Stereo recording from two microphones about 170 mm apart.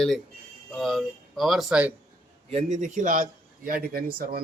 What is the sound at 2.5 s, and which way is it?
A man's voice, 40° right (ahead or behind).